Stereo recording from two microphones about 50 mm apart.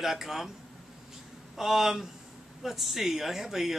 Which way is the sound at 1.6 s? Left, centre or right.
Centre.